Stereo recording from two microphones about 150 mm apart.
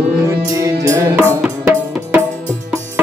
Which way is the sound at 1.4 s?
10° right (ahead or behind).